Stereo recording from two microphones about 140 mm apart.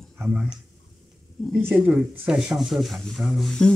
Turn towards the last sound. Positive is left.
turn(degrees=5)  # may be behind; listen again after turning